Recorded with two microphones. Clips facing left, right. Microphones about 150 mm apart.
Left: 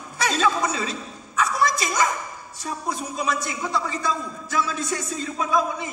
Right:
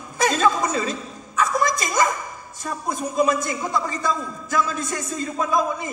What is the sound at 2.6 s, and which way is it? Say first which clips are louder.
A man's voice: right 2 dB; 45° right (ahead or behind).